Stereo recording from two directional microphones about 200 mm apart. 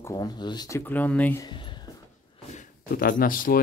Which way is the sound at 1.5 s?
25° left (ahead or behind).